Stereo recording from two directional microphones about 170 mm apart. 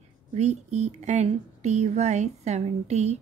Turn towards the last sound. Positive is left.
turn(degrees=-40)  # may be behind; listen again after turning